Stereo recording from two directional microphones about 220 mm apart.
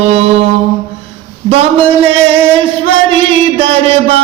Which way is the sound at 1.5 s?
25° right (ahead or behind).